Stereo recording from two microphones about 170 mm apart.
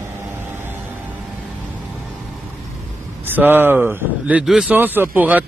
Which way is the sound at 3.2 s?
10° right (ahead or behind).